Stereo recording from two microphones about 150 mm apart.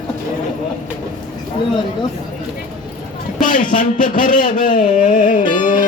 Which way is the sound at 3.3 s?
60° left (ahead or behind).